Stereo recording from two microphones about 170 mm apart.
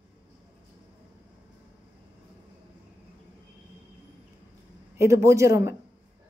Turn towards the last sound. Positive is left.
turn(degrees=-15)  # may be behind; listen again after turning